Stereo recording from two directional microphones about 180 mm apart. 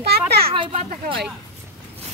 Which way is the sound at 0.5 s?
30° right (ahead or behind).